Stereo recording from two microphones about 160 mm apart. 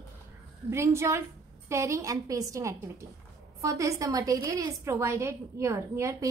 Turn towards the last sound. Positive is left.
turn(degrees=-15)  # may be behind; listen again after turning